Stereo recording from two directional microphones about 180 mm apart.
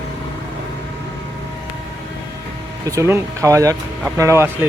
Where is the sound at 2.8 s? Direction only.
15° right (ahead or behind).